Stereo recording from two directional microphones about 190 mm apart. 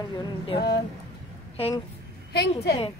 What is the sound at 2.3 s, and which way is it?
Speech, 60° left (ahead or behind).